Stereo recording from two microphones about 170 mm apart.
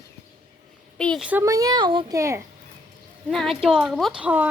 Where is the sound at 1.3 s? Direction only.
15° right (ahead or behind).